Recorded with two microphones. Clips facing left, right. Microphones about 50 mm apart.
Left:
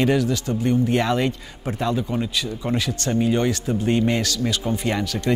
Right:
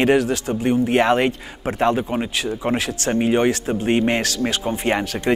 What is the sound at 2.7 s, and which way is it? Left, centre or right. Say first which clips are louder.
Speech: left 1 dB; right.